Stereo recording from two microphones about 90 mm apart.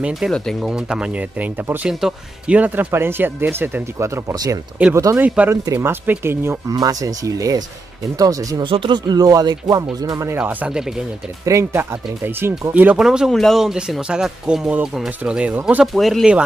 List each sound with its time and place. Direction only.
0.3 s speech: 5° left (ahead or behind)
0.7 s speech: 10° right (ahead or behind)
1.9 s speech: 5° right (ahead or behind)
2.5 s speech: 20° right (ahead or behind)
5.2 s speech: 15° right (ahead or behind)
5.5 s speech: 30° right (ahead or behind)
6.7 s speech: 45° right (ahead or behind)
8.6 s speech: 70° right (ahead or behind)
9.0 s speech: 45° right (ahead or behind)
10.3 s speech: 20° right (ahead or behind)
11.4 s speech: 35° right (ahead or behind)
12.4 s speech: 25° right (ahead or behind)
12.9 s speech: 5° right (ahead or behind)
15.8 s speech: centre (ahead or behind)